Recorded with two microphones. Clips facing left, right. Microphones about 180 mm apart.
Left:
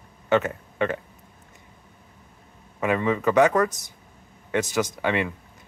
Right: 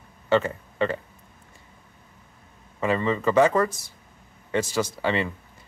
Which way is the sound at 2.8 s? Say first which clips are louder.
Left 1 dB; 5° left (ahead or behind).